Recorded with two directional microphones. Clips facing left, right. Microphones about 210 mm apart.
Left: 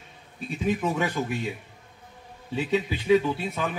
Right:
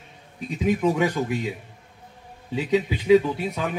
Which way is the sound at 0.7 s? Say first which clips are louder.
Right 5 dB; 15° right (ahead or behind).